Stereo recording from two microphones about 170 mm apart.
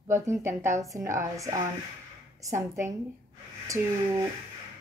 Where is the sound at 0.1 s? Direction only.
15° right (ahead or behind).